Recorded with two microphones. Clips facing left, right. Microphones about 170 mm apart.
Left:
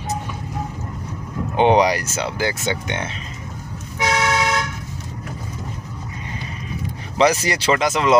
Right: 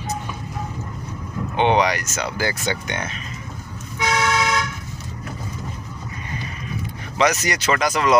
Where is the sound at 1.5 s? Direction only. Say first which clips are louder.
Left 3 dB; 35° left (ahead or behind).